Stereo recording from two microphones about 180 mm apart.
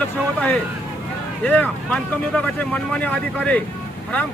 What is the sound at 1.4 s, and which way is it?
Speech, 5° left (ahead or behind).